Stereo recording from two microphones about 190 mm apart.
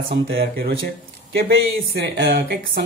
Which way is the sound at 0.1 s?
55° right (ahead or behind).